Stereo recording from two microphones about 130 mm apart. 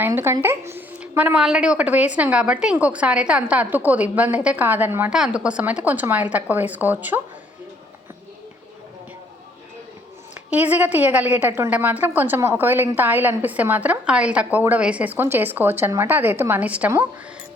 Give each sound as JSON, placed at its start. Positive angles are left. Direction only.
{"t": 0.0, "sound": "a woman's voice", "side_deg": -20}
{"t": 10.5, "sound": "a woman's voice", "side_deg": -10}